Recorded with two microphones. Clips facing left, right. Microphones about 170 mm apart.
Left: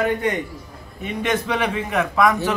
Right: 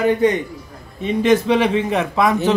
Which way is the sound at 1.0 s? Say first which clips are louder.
Right 8 dB; 30° right (ahead or behind).